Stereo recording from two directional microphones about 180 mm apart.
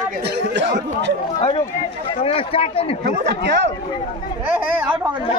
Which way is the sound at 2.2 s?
30° left (ahead or behind).